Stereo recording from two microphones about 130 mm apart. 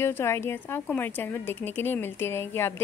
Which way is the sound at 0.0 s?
20° left (ahead or behind).